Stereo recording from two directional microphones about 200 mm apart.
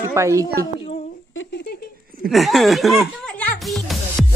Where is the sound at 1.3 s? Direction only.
65° left (ahead or behind).